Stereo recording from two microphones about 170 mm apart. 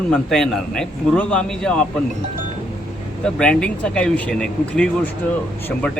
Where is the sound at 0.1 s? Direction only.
5° left (ahead or behind).